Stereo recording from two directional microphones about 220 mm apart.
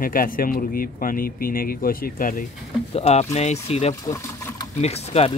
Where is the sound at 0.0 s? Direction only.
40° left (ahead or behind).